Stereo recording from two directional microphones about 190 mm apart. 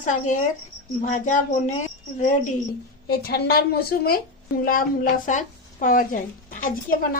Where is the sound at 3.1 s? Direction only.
50° left (ahead or behind).